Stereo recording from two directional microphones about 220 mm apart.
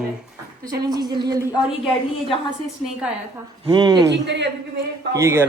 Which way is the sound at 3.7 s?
20° right (ahead or behind).